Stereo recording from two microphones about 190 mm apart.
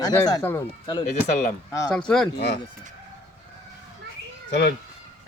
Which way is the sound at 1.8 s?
5° left (ahead or behind).